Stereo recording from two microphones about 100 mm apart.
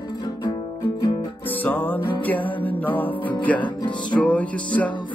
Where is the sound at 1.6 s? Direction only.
15° left (ahead or behind).